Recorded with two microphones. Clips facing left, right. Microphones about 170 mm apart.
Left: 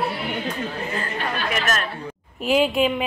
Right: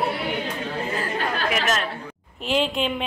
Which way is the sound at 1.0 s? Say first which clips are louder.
Right 1 dB; 15° right (ahead or behind).